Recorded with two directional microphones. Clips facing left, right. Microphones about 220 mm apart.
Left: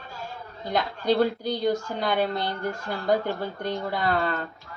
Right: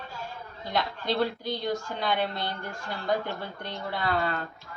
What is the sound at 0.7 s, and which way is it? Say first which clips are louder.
Speech: left 5 dB; 45° left (ahead or behind).